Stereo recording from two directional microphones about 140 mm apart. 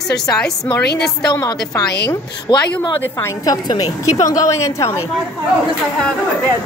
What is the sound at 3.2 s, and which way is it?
A woman's voice, 15° left (ahead or behind).